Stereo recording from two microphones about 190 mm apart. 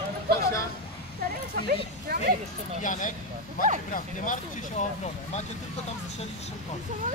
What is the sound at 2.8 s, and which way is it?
Speech, 40° left (ahead or behind).